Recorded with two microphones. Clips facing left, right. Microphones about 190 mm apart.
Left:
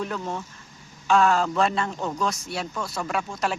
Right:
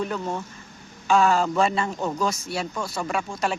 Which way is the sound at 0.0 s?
Centre (ahead or behind).